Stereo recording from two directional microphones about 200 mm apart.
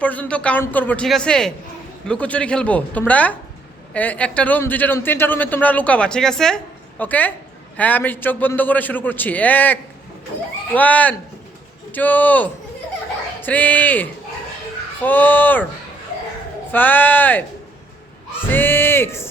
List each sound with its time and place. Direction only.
0.0 s a man's voice: 5° left (ahead or behind)
10.8 s speech: 5° left (ahead or behind)
16.7 s speech: 10° left (ahead or behind)